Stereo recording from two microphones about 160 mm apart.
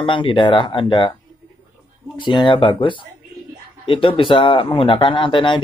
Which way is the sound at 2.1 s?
30° left (ahead or behind).